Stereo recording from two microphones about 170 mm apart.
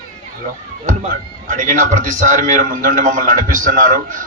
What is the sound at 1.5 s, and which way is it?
A man's voice, 50° right (ahead or behind).